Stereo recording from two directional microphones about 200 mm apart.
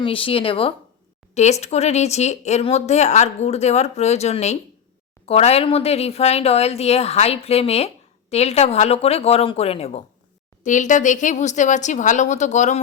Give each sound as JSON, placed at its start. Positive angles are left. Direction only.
{"t": 0.0, "sound": "speech", "side_deg": 25}